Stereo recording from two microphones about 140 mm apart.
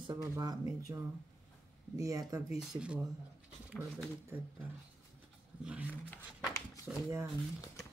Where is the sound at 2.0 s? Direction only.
25° right (ahead or behind).